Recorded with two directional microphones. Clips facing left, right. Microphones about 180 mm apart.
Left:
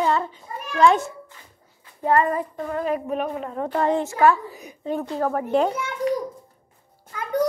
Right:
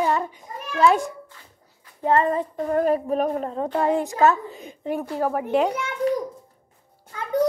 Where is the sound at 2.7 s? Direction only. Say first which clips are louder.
Right 5 dB; 45° right (ahead or behind).